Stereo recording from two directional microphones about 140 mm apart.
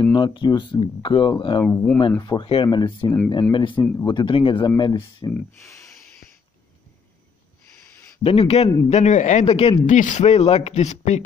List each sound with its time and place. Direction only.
0.0 s speech: 30° left (ahead or behind)
1.6 s speech: 20° left (ahead or behind)
2.0 s speech: 35° left (ahead or behind)
5.3 s speech: 20° left (ahead or behind)
8.2 s a man's voice: 45° left (ahead or behind)
9.8 s speech: 65° left (ahead or behind)